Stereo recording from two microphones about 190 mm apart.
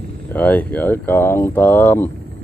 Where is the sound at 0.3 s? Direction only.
10° left (ahead or behind).